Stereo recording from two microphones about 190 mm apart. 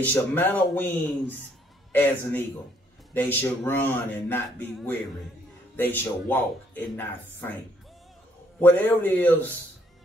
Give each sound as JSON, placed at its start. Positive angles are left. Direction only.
{"t": 0.0, "sound": "speech", "side_deg": 10}
{"t": 8.5, "sound": "speech", "side_deg": 10}